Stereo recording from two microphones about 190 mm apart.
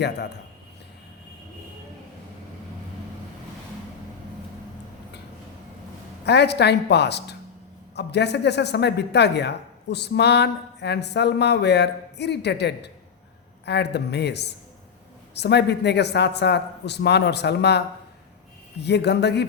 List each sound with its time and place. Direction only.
6.2 s speech: 60° left (ahead or behind)